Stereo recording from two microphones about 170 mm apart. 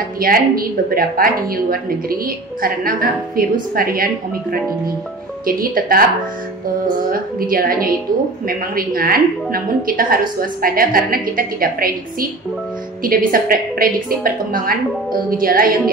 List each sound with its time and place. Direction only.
0.2 s a woman's voice: 60° right (ahead or behind)
7.1 s a woman's voice: 60° right (ahead or behind)